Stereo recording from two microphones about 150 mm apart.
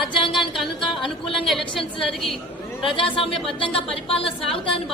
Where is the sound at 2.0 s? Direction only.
Centre (ahead or behind).